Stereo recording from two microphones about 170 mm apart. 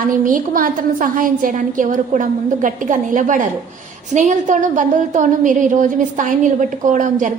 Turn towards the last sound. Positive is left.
turn(degrees=-50)  # may be behind; listen again after turning